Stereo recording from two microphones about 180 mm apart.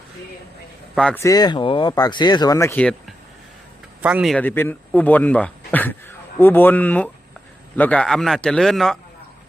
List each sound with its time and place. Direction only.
0.9 s a man's voice: 5° left (ahead or behind)
1.2 s speech: 20° left (ahead or behind)
4.0 s a man's voice: 5° right (ahead or behind)
4.4 s a man's voice: 10° left (ahead or behind)